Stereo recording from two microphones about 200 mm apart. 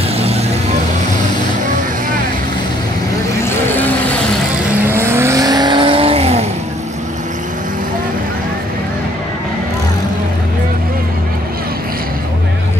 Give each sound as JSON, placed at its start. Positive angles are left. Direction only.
{"t": 3.4, "sound": "vehicle", "side_deg": 10}
{"t": 4.8, "sound": "vehicle", "side_deg": -10}